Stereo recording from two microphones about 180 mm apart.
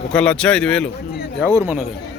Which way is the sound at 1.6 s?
10° right (ahead or behind).